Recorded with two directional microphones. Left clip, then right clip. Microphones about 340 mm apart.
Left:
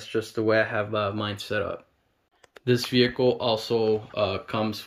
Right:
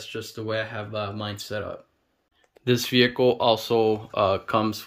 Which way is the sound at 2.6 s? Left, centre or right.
Centre.